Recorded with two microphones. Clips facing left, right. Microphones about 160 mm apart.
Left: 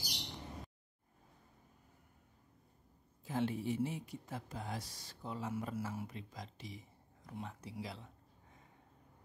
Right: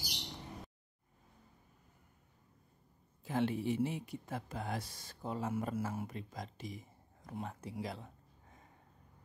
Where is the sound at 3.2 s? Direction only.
70° right (ahead or behind); by 8.1 s 50° right (ahead or behind).